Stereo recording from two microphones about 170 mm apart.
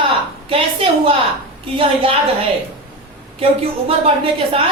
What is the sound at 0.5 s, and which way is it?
A woman's voice, 35° right (ahead or behind).